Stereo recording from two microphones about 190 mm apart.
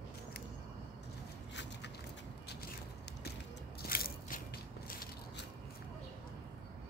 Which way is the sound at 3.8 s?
50° left (ahead or behind).